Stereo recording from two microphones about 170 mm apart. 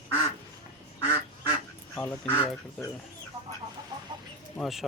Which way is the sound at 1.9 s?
15° left (ahead or behind).